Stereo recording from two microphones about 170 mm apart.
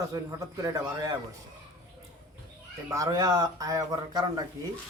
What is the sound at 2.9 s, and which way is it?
A man's voice, 20° right (ahead or behind).